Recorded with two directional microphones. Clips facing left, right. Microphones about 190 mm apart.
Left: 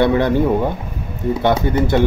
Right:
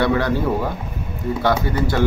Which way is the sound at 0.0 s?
20° left (ahead or behind).